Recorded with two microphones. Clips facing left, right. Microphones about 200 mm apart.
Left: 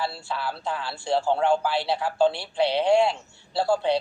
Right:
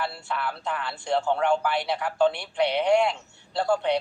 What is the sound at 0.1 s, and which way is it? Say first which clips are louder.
A woman's voice: even; 30° left (ahead or behind).